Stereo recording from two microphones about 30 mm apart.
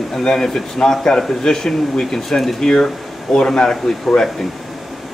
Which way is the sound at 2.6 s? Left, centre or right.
Left.